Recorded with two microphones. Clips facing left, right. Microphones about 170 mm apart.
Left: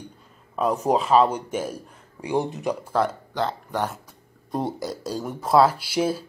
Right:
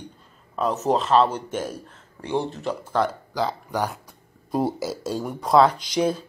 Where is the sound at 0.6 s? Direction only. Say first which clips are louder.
Left 1 dB; 10° left (ahead or behind).